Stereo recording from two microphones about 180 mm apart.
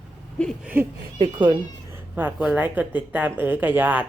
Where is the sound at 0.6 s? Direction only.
10° right (ahead or behind).